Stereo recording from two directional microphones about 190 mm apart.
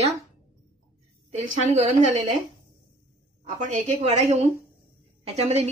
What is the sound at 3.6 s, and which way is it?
A woman's voice, 35° right (ahead or behind).